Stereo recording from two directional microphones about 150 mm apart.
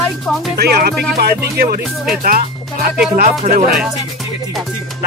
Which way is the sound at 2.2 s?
70° right (ahead or behind).